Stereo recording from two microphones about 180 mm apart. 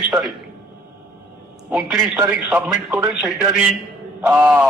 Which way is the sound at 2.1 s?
10° right (ahead or behind).